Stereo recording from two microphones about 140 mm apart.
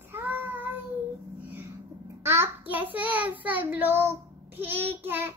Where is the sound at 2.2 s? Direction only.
15° right (ahead or behind).